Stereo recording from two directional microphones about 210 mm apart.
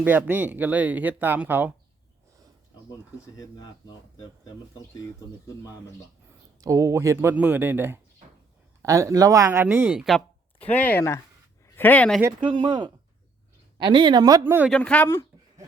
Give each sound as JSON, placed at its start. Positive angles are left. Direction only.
{"t": 0.0, "sound": "speech", "side_deg": -10}
{"t": 3.3, "sound": "speech", "side_deg": 20}
{"t": 6.6, "sound": "speech", "side_deg": -15}
{"t": 12.4, "sound": "speech", "side_deg": -20}
{"t": 14.7, "sound": "speech", "side_deg": 5}